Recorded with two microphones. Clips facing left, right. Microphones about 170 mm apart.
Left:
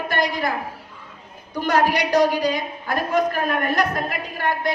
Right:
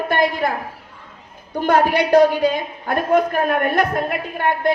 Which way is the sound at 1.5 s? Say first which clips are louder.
Right 3 dB; 55° right (ahead or behind).